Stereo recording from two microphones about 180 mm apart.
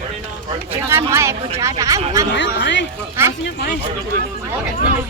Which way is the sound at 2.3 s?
75° left (ahead or behind).